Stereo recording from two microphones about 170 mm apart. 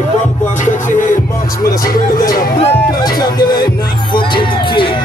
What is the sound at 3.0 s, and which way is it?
Music, 25° left (ahead or behind).